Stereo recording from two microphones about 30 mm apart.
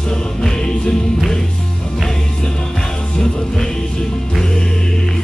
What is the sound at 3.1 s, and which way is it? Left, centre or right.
Music, left.